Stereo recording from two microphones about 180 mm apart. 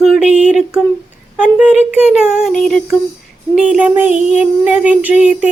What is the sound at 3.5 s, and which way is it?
Child singing, 5° right (ahead or behind).